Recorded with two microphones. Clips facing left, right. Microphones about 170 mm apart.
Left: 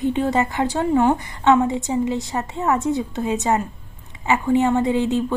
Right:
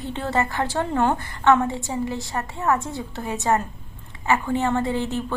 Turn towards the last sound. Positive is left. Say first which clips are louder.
# left 5 dB
turn(degrees=20)  # may be behind; listen again after turning